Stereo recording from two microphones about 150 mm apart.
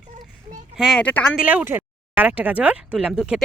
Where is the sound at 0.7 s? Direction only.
Centre (ahead or behind).